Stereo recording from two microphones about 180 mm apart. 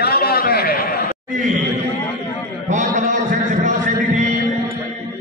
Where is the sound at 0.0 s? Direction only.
60° left (ahead or behind).